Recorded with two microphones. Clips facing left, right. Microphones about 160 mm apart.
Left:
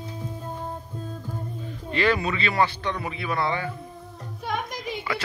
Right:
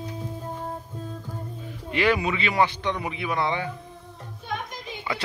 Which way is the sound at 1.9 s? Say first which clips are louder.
Right 1 dB; 15° right (ahead or behind).